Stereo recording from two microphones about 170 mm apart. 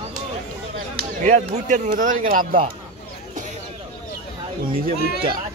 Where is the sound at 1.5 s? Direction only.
50° right (ahead or behind).